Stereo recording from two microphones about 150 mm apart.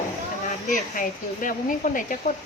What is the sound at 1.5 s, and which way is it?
Speech, 60° left (ahead or behind).